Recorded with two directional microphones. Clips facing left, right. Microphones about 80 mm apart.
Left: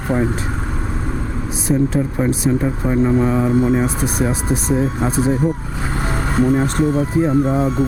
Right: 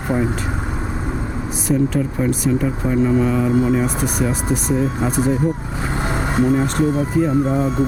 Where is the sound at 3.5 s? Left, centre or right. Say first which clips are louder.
Left 1 dB; centre.